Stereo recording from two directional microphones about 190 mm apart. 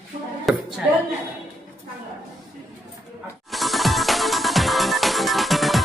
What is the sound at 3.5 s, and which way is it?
Music, centre (ahead or behind).